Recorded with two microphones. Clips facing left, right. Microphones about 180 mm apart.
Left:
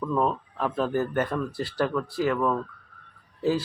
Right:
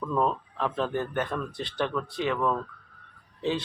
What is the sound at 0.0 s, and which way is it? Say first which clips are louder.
Speech: left 1 dB; 5° left (ahead or behind).